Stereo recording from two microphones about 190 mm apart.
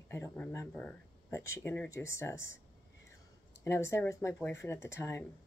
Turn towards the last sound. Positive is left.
turn(degrees=15)  # may be behind; listen again after turning